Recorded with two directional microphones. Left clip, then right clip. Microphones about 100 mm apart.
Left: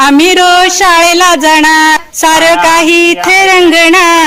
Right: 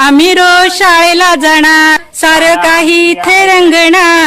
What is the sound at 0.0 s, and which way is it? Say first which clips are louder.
Music: even; 20° right (ahead or behind).